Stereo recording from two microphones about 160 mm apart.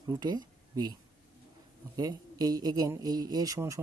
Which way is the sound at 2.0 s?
25° right (ahead or behind).